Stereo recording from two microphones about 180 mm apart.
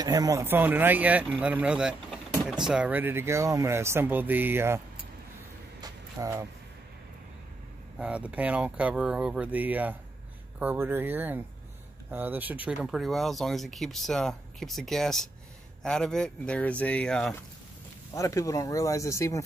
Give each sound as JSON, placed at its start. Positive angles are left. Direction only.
{"t": 0.0, "sound": "speech", "side_deg": -20}
{"t": 5.8, "sound": "a sound", "side_deg": -15}
{"t": 8.0, "sound": "speech", "side_deg": -5}
{"t": 18.1, "sound": "speech", "side_deg": 15}